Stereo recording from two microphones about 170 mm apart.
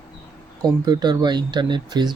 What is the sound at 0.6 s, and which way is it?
Speech, 25° right (ahead or behind).